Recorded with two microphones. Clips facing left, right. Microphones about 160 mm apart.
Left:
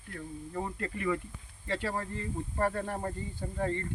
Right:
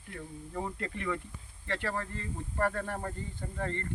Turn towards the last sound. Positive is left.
turn(degrees=10)  # may be behind; listen again after turning